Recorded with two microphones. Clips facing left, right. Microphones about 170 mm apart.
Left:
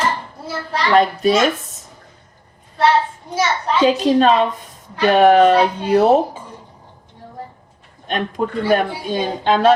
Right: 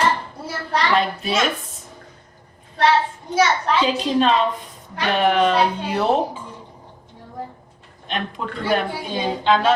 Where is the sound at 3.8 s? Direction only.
45° left (ahead or behind).